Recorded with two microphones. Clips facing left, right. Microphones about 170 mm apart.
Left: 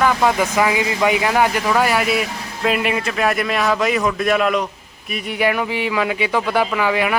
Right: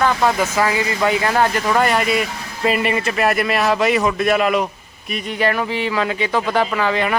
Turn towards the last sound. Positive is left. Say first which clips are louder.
# even
turn(degrees=10)  # may be behind; listen again after turning